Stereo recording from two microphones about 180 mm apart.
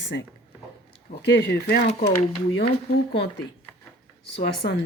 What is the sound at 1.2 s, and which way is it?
Speech, 70° left (ahead or behind).